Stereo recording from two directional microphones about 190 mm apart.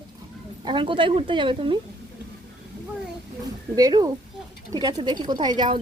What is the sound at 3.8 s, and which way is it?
A woman's voice, 20° right (ahead or behind).